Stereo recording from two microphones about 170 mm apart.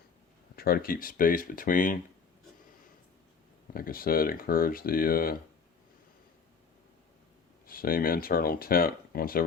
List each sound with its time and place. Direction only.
0.5 s speech: 60° left (ahead or behind)
3.7 s speech: 60° left (ahead or behind)
7.7 s speech: 60° left (ahead or behind)